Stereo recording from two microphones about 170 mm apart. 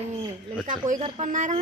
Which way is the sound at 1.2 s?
45° right (ahead or behind).